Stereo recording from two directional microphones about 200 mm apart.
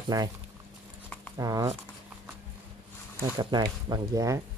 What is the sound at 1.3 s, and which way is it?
Speech, 15° right (ahead or behind).